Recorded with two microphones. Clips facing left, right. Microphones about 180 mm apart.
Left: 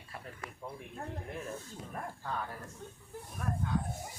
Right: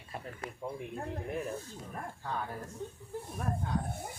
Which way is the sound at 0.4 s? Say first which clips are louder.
Right 4 dB; 30° right (ahead or behind).